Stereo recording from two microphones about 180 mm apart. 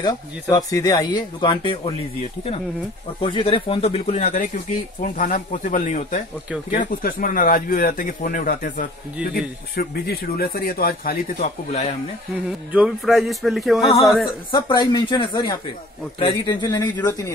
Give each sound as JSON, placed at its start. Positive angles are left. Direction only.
{"t": 0.0, "sound": "speech", "side_deg": 20}
{"t": 3.2, "sound": "speech", "side_deg": 30}
{"t": 12.4, "sound": "speech", "side_deg": -5}
{"t": 14.5, "sound": "speech", "side_deg": 25}